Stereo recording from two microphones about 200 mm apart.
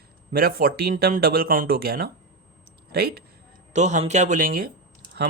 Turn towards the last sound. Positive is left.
turn(degrees=-45)  # may be behind; listen again after turning